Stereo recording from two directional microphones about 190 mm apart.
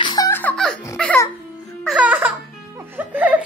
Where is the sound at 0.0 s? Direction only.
25° left (ahead or behind).